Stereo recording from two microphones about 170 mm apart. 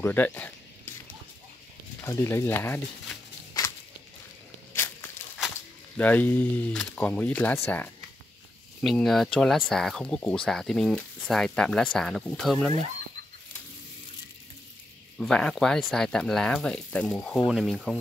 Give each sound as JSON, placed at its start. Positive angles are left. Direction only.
{"t": 0.0, "sound": "speech", "side_deg": 10}
{"t": 2.0, "sound": "speech", "side_deg": 15}
{"t": 3.6, "sound": "walk", "side_deg": 20}
{"t": 5.9, "sound": "speech", "side_deg": 10}
{"t": 8.8, "sound": "speech", "side_deg": 0}
{"t": 15.1, "sound": "speech", "side_deg": 5}